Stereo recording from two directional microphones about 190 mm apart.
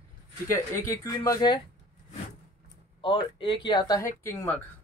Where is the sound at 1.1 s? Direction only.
20° left (ahead or behind).